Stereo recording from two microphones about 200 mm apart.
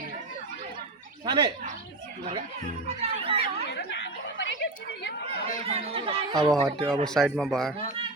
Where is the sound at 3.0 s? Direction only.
30° right (ahead or behind).